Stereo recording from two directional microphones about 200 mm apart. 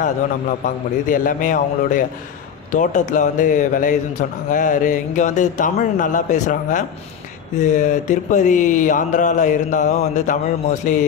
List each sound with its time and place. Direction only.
0.7 s speech: 40° left (ahead or behind)